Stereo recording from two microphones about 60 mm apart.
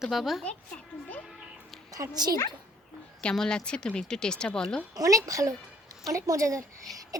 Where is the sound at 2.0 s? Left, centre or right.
Right.